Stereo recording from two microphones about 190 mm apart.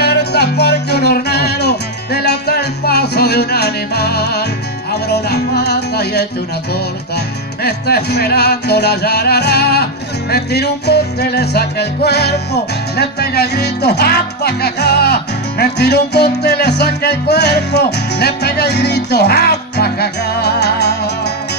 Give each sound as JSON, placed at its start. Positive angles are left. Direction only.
{"t": 0.0, "sound": "music", "side_deg": 60}
{"t": 7.6, "sound": "music", "side_deg": 60}